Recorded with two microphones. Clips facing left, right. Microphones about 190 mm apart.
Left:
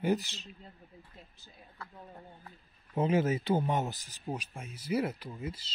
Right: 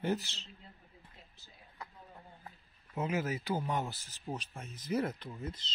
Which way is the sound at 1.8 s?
15° right (ahead or behind).